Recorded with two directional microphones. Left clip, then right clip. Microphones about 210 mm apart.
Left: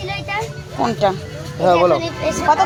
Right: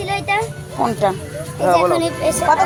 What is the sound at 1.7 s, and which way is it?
Speech, 40° left (ahead or behind).